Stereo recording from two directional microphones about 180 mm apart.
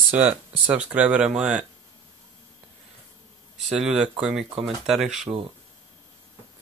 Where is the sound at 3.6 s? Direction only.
5° right (ahead or behind).